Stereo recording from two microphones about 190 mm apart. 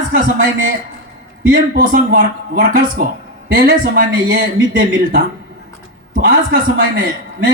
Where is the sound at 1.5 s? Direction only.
45° right (ahead or behind).